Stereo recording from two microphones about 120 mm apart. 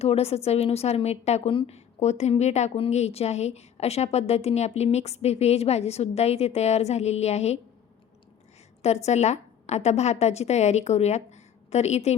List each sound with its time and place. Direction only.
0.0 s a woman's voice: 60° left (ahead or behind)
8.8 s a woman's voice: 65° left (ahead or behind)